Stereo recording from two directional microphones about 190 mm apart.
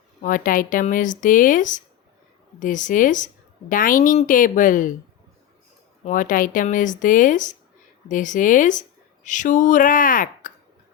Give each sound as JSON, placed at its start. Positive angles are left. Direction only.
{"t": 0.2, "sound": "speech", "side_deg": 45}
{"t": 6.1, "sound": "speech", "side_deg": 45}